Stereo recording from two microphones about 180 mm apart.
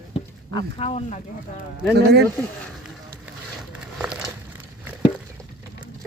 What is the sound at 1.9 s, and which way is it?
Speech, 65° right (ahead or behind).